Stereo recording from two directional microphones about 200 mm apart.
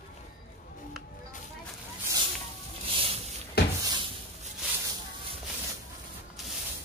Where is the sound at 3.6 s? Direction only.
50° left (ahead or behind).